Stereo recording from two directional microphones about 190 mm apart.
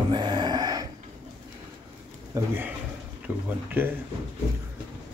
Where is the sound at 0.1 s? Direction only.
25° right (ahead or behind).